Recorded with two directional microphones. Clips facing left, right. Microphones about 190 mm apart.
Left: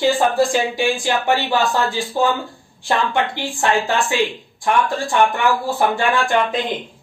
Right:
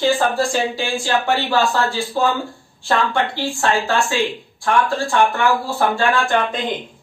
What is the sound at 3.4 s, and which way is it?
Speech, 15° left (ahead or behind).